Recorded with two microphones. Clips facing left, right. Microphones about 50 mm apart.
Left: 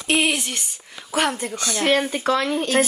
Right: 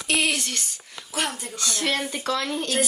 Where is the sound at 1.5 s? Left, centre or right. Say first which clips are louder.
Left 6 dB; left.